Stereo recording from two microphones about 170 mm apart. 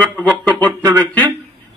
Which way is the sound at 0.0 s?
10° left (ahead or behind).